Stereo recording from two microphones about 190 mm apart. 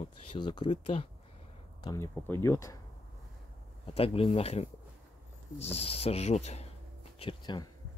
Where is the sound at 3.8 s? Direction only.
30° left (ahead or behind).